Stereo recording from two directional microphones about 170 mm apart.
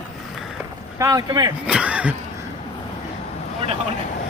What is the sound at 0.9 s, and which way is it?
Speech, 20° right (ahead or behind).